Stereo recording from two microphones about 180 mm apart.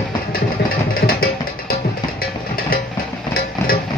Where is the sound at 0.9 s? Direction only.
55° left (ahead or behind).